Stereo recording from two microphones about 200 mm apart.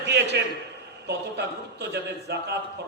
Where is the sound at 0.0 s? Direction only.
60° right (ahead or behind).